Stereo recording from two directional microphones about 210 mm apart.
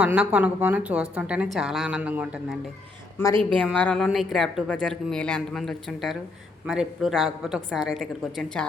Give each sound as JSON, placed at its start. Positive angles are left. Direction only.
{"t": 0.0, "sound": "speech", "side_deg": -5}
{"t": 3.6, "sound": "speech", "side_deg": 5}